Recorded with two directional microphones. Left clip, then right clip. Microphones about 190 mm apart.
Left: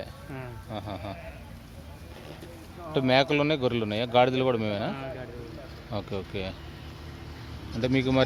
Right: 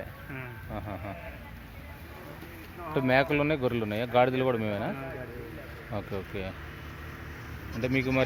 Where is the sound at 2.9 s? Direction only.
10° left (ahead or behind).